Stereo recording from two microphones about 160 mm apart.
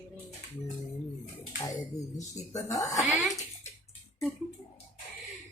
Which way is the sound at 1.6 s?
20° left (ahead or behind).